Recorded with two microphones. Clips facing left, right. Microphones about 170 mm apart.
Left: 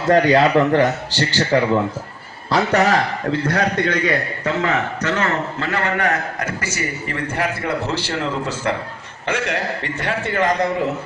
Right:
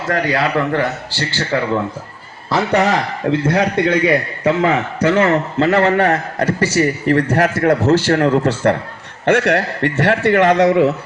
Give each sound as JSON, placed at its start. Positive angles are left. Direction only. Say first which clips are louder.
{"t": 0.1, "sound": "a man's voice", "louder": "left 4 dB", "side_deg": 20}
{"t": 3.4, "sound": "a man's voice", "louder": "right 4 dB", "side_deg": -25}
{"t": 8.1, "sound": "a man's voice", "louder": "right 9 dB", "side_deg": -70}